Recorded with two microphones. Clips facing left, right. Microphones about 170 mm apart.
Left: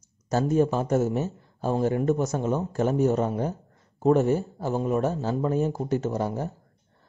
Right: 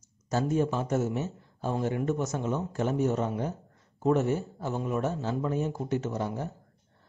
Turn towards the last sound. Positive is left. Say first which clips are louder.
# left 4 dB
turn(degrees=40)  # may be behind; listen again after turning